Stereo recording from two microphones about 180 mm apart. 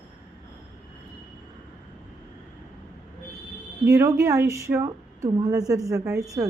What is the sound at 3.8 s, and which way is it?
Speech, 15° right (ahead or behind).